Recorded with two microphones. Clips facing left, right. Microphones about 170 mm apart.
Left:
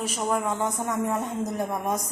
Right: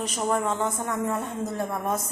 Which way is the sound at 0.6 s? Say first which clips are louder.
Even; 20° left (ahead or behind).